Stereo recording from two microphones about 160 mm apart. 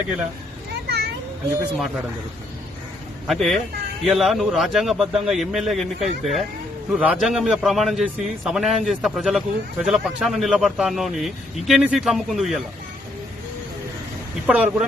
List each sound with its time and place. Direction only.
0.9 s children playing: 90° right
3.2 s a man's voice: centre (ahead or behind)
14.4 s speech: 5° right (ahead or behind)